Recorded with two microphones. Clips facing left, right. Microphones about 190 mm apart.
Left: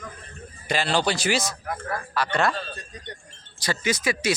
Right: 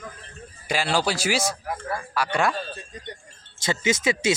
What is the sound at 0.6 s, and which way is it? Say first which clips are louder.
Speech: even; 10° right (ahead or behind).